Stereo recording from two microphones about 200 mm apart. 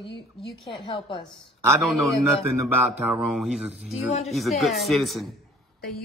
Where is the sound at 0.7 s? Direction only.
25° left (ahead or behind).